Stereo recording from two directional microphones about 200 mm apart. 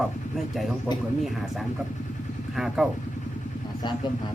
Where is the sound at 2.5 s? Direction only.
Centre (ahead or behind).